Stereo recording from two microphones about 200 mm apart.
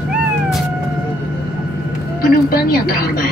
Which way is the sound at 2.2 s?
45° left (ahead or behind).